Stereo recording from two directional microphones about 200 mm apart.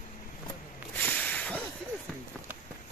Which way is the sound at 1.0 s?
10° left (ahead or behind).